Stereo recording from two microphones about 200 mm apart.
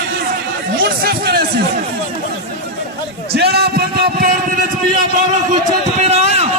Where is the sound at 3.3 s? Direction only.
55° right (ahead or behind).